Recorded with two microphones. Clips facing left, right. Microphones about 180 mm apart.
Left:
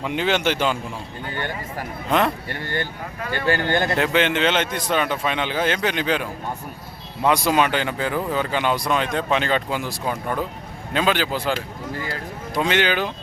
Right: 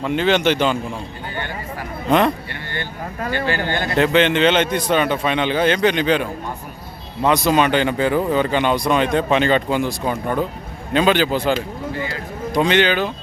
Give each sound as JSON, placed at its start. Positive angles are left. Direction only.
{"t": 0.0, "sound": "a man's voice", "side_deg": 10}
{"t": 2.0, "sound": "speech", "side_deg": 0}
{"t": 3.2, "sound": "speech", "side_deg": -45}
{"t": 3.7, "sound": "a man's voice", "side_deg": 45}
{"t": 3.9, "sound": "speech", "side_deg": 5}
{"t": 7.3, "sound": "speech", "side_deg": 10}
{"t": 12.5, "sound": "a man's voice", "side_deg": 5}